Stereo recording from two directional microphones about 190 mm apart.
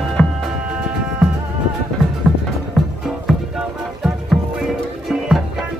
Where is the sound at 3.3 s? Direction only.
Centre (ahead or behind).